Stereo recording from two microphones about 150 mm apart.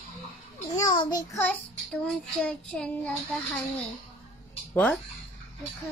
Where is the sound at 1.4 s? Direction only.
5° left (ahead or behind).